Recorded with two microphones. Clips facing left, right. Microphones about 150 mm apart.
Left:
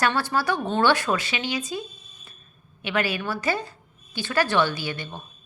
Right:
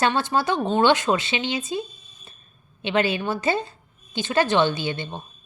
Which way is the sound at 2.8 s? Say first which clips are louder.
Right 4 dB; 25° right (ahead or behind).